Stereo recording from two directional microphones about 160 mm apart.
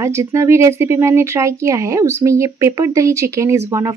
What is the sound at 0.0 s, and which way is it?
Speech, 15° right (ahead or behind).